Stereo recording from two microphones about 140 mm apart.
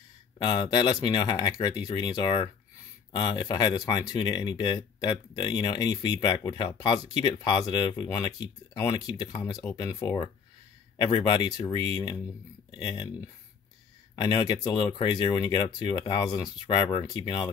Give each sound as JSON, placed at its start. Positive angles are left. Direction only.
{"t": 0.4, "sound": "speech", "side_deg": 30}